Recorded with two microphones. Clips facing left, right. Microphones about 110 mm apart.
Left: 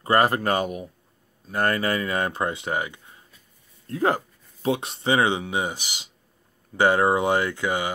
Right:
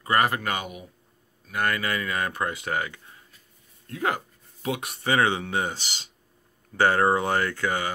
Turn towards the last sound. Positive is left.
turn(degrees=15)  # may be behind; listen again after turning